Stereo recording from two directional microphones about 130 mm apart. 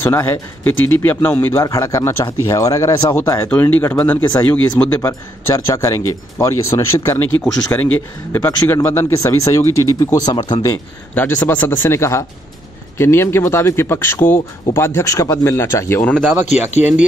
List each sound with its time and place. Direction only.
0.0 s a man's voice: 15° left (ahead or behind)
10.1 s speech: 35° left (ahead or behind)
11.1 s a man's voice: 15° left (ahead or behind)
16.8 s speech: 15° right (ahead or behind)